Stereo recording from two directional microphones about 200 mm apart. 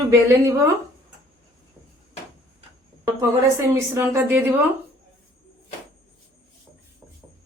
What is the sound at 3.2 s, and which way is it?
A woman's voice, 15° right (ahead or behind).